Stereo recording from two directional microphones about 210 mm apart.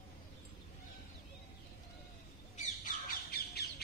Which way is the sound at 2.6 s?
40° left (ahead or behind).